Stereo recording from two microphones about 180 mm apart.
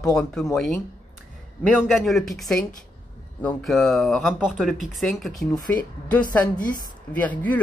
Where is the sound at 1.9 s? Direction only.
Centre (ahead or behind).